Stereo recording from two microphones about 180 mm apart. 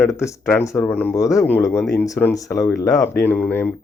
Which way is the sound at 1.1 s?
20° left (ahead or behind).